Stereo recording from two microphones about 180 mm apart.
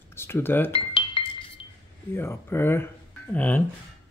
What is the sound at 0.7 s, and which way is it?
Glass, 30° left (ahead or behind).